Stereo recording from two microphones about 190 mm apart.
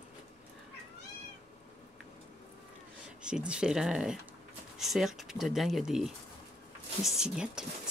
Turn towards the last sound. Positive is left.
turn(degrees=-5)  # may be behind; listen again after turning